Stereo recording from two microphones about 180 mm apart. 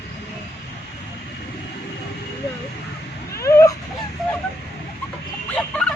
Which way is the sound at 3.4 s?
15° left (ahead or behind).